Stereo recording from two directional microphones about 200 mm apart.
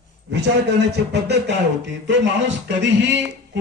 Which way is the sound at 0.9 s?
60° right (ahead or behind).